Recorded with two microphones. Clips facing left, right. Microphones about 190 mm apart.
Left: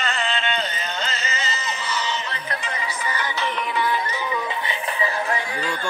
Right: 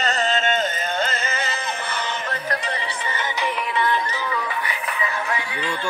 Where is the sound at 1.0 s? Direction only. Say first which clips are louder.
Right 3 dB; 55° right (ahead or behind).